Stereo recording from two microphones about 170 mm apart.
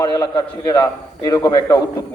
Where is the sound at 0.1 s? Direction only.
20° left (ahead or behind).